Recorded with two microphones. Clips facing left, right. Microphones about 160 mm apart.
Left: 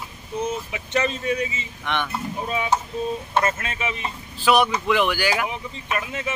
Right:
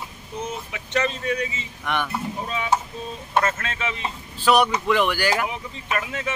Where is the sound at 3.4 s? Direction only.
10° left (ahead or behind).